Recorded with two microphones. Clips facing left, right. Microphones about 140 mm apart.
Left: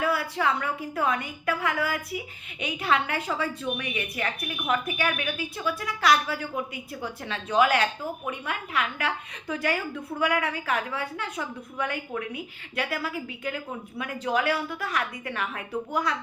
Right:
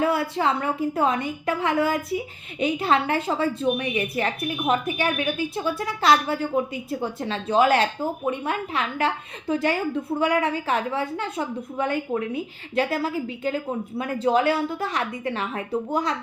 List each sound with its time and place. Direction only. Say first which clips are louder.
0.0 s a woman's voice: right 4 dB; 25° right (ahead or behind)